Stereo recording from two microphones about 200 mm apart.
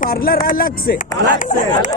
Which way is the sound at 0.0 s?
45° left (ahead or behind).